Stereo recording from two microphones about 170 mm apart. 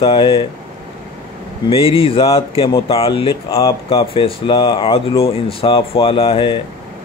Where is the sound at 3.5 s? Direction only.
20° left (ahead or behind).